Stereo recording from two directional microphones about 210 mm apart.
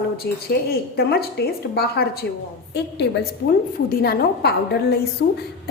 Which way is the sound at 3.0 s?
50° left (ahead or behind).